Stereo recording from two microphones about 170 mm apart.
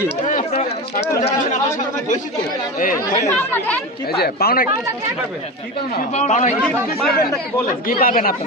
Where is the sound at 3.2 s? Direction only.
10° left (ahead or behind).